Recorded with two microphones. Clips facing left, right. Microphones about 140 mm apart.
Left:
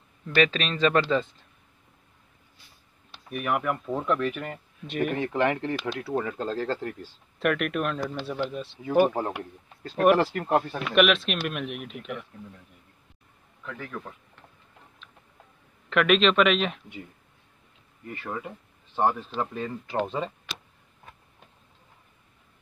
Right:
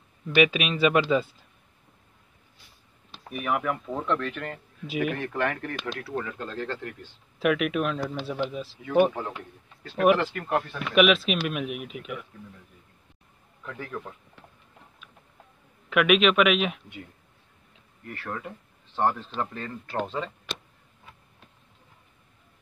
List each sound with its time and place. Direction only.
0.3 s speech: 10° right (ahead or behind)
3.3 s speech: centre (ahead or behind)
4.8 s speech: 5° right (ahead or behind)
5.1 s speech: 15° left (ahead or behind); by 7.1 s 35° left (ahead or behind)
7.3 s speech: centre (ahead or behind)
10.1 s speech: 35° left (ahead or behind)
10.8 s speech: centre (ahead or behind)
15.9 s speech: 5° right (ahead or behind)
18.0 s speech: 15° left (ahead or behind)